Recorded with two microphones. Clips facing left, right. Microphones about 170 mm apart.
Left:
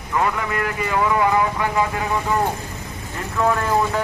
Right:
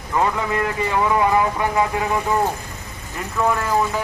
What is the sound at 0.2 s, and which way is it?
Speech, 25° right (ahead or behind).